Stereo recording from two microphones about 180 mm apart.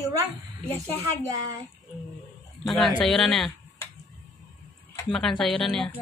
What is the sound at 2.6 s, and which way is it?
Speech, centre (ahead or behind).